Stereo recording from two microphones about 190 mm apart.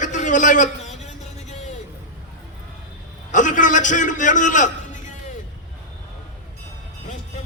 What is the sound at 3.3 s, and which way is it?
A man's voice, 40° left (ahead or behind).